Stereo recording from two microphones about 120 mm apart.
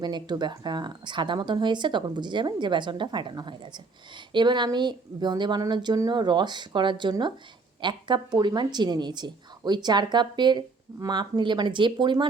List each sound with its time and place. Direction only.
0.0 s speech: 35° right (ahead or behind)